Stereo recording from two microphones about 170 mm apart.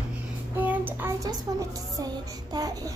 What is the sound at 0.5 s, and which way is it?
A child's voice, 10° right (ahead or behind).